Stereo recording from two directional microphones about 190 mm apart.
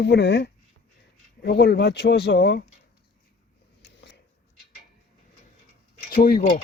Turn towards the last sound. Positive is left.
turn(degrees=50)  # may be behind; listen again after turning